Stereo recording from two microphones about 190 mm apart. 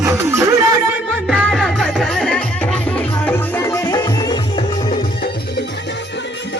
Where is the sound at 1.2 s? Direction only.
Centre (ahead or behind); by 5.0 s 25° left (ahead or behind).